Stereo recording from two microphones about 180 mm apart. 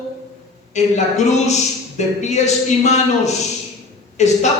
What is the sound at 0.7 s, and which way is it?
A man's voice, 40° left (ahead or behind).